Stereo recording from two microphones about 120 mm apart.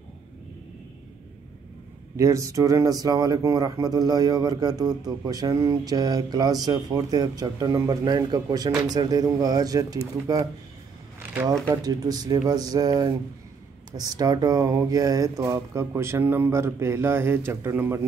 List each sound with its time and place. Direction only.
2.1 s speech: 25° right (ahead or behind)
11.6 s speech: 30° right (ahead or behind)